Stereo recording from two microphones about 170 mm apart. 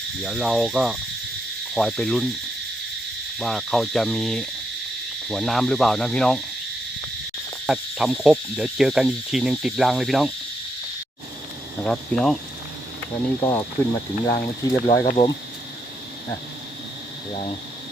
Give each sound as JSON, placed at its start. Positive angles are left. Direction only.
{"t": 0.2, "sound": "cricket", "side_deg": 0}
{"t": 3.3, "sound": "cricket", "side_deg": 0}
{"t": 7.7, "sound": "cricket", "side_deg": -5}
{"t": 11.8, "sound": "cricket", "side_deg": 5}
{"t": 13.4, "sound": "speech", "side_deg": 20}
{"t": 14.3, "sound": "speech", "side_deg": 30}
{"t": 15.0, "sound": "cricket", "side_deg": 40}